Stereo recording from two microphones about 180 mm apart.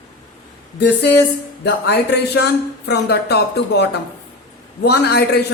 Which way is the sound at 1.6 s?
65° left (ahead or behind).